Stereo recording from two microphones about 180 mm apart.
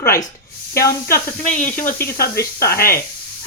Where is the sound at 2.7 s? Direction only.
55° left (ahead or behind).